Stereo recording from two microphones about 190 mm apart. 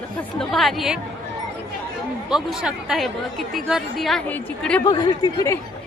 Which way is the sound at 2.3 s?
5° right (ahead or behind).